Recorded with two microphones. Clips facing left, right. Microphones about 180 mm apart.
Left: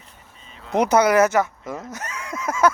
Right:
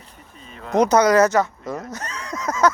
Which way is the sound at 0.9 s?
10° left (ahead or behind).